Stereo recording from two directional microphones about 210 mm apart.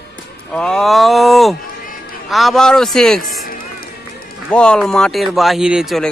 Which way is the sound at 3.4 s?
45° left (ahead or behind).